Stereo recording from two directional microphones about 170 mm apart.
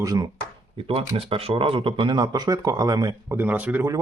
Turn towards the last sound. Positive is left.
turn(degrees=-15)  # may be behind; listen again after turning